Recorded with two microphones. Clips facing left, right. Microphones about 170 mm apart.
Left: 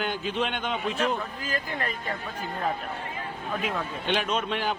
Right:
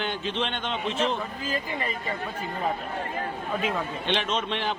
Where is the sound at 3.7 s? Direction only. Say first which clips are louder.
Even; 5° left (ahead or behind).